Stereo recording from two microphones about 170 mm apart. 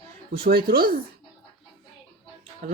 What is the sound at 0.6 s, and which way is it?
Speech, 60° right (ahead or behind).